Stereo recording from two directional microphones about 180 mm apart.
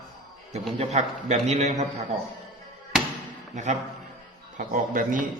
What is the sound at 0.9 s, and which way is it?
A man's voice, 40° right (ahead or behind).